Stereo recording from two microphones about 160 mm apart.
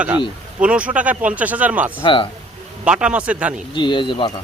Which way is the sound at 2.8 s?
5° right (ahead or behind).